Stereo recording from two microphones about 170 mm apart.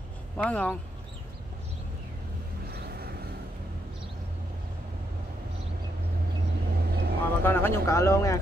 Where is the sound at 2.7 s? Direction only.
65° right (ahead or behind).